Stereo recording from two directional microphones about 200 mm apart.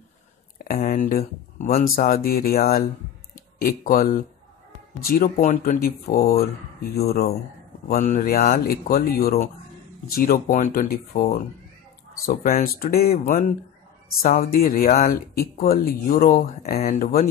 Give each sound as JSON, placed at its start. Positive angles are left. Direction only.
{"t": 0.7, "sound": "speech", "side_deg": 45}
{"t": 12.3, "sound": "speech", "side_deg": 45}